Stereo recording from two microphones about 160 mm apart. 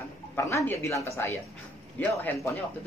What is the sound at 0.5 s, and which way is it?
Speech, 20° left (ahead or behind).